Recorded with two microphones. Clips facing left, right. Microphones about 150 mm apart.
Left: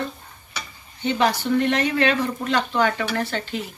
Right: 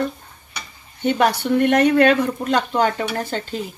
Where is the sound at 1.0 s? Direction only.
55° right (ahead or behind).